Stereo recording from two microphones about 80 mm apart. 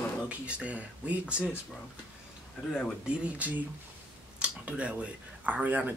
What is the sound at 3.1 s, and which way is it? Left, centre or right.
Speech, centre.